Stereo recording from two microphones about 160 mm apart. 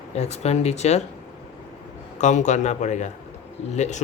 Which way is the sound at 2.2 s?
50° left (ahead or behind).